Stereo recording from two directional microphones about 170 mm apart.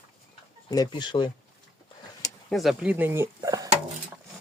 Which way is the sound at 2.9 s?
15° right (ahead or behind).